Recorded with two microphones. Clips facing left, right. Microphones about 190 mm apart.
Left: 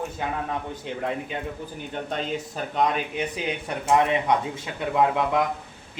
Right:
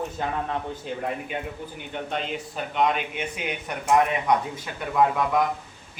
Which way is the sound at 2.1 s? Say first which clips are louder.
Left 2 dB; 40° left (ahead or behind).